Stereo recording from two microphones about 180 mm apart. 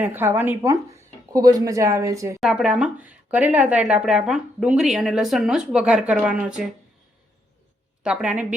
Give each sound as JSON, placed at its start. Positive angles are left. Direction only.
{"t": 0.0, "sound": "speech", "side_deg": -10}
{"t": 2.4, "sound": "speech", "side_deg": -5}
{"t": 8.0, "sound": "speech", "side_deg": -5}